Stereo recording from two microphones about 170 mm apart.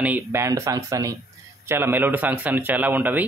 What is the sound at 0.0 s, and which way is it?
Speech, 10° right (ahead or behind).